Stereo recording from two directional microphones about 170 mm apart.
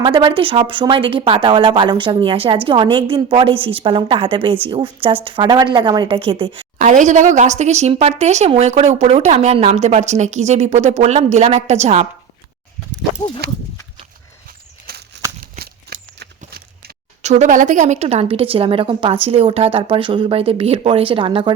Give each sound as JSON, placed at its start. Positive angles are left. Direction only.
{"t": 0.0, "sound": "a woman's voice", "side_deg": -25}
{"t": 6.7, "sound": "a woman's voice", "side_deg": -45}
{"t": 13.4, "sound": "speech", "side_deg": -70}
{"t": 14.8, "sound": "bird flight", "side_deg": -75}
{"t": 15.5, "sound": "a sound", "side_deg": -70}
{"t": 16.4, "sound": "a sound", "side_deg": -55}
{"t": 17.2, "sound": "a woman's voice", "side_deg": -40}